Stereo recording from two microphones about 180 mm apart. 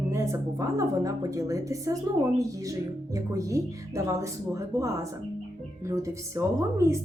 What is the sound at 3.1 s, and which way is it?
A woman's voice, 20° right (ahead or behind).